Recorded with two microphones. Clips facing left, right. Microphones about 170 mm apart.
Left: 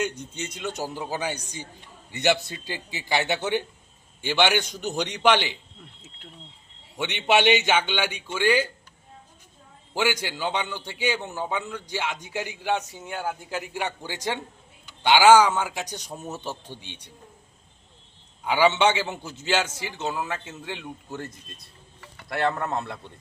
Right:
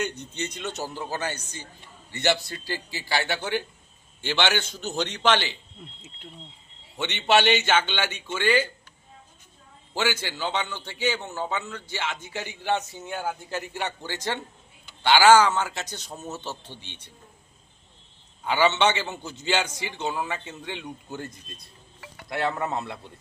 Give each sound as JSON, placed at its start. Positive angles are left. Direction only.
{"t": 0.0, "sound": "a man's voice", "side_deg": 10}
{"t": 6.9, "sound": "a man's voice", "side_deg": 10}
{"t": 9.9, "sound": "a man's voice", "side_deg": 15}
{"t": 18.4, "sound": "a man's voice", "side_deg": 10}